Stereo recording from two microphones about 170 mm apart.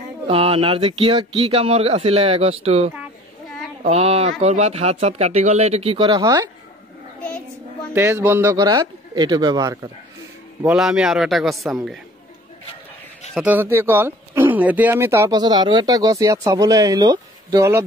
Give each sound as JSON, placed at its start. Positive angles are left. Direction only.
{"t": 0.3, "sound": "speech", "side_deg": -35}
{"t": 7.9, "sound": "speech", "side_deg": -15}
{"t": 10.7, "sound": "a man's voice", "side_deg": -5}
{"t": 13.3, "sound": "speech", "side_deg": -5}